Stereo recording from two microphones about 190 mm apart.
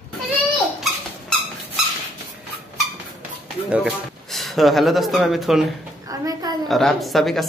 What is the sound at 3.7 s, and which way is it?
Speech, 5° right (ahead or behind).